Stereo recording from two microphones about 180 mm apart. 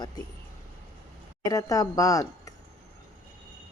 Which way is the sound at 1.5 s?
20° left (ahead or behind).